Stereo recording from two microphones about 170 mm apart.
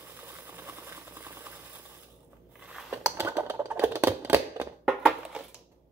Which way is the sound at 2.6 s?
5° right (ahead or behind).